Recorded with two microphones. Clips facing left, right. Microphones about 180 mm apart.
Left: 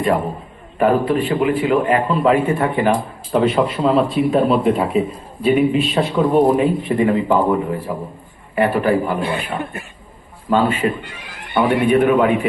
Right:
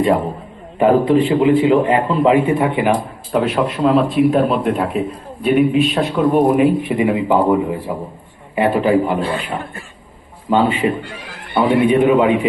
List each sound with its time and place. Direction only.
0.8 s a man's voice: 20° right (ahead or behind)
3.4 s a man's voice: centre (ahead or behind); by 9.1 s 20° right (ahead or behind)
9.2 s speech: 15° left (ahead or behind)
10.5 s a man's voice: 15° right (ahead or behind)